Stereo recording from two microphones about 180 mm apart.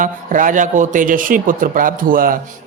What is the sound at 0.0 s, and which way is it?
Speech, 50° right (ahead or behind).